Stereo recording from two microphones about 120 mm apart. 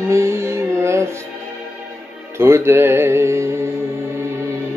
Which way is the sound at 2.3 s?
20° right (ahead or behind).